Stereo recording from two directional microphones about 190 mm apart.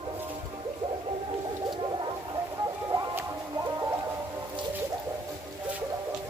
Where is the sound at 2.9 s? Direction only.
15° right (ahead or behind).